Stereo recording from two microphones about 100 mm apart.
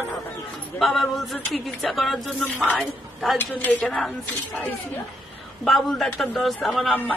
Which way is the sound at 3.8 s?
5° left (ahead or behind).